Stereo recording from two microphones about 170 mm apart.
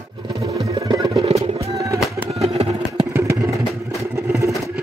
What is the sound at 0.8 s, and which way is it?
Music, 25° right (ahead or behind).